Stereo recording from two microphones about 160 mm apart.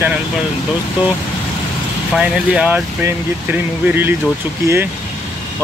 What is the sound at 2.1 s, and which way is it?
Speech, 5° right (ahead or behind).